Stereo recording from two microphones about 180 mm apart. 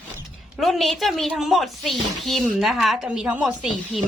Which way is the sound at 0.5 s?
Centre (ahead or behind).